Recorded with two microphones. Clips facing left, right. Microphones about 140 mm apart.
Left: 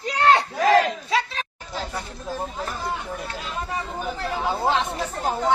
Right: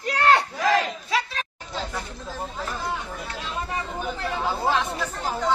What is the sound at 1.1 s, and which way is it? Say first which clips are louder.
Chatter: left 2 dB; 25° left (ahead or behind).